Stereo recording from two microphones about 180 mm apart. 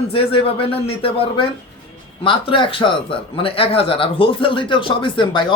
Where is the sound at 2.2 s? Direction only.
30° left (ahead or behind).